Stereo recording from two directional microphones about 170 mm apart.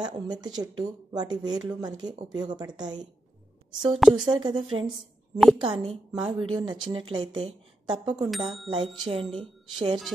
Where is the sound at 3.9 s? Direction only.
5° right (ahead or behind).